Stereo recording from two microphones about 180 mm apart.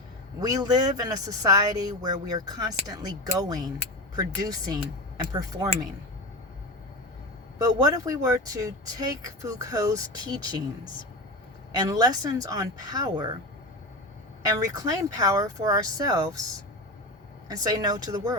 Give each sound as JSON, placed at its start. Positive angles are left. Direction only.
{"t": 0.3, "sound": "speech", "side_deg": -20}
{"t": 7.6, "sound": "speech", "side_deg": -20}
{"t": 11.7, "sound": "speech", "side_deg": -20}
{"t": 14.4, "sound": "speech", "side_deg": -20}
{"t": 17.5, "sound": "speech", "side_deg": -20}